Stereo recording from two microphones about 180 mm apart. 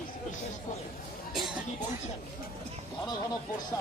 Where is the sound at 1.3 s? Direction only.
Centre (ahead or behind).